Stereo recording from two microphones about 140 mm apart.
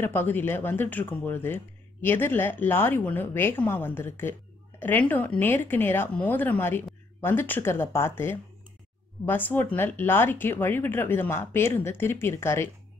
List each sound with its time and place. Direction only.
0.0 s speech: 15° left (ahead or behind)